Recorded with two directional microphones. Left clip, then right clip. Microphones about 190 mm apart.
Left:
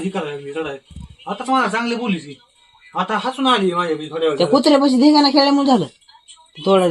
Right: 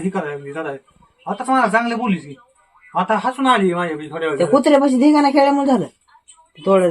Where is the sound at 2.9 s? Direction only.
10° right (ahead or behind).